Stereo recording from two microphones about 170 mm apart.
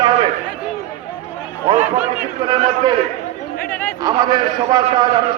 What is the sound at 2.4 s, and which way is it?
Speech, 30° right (ahead or behind).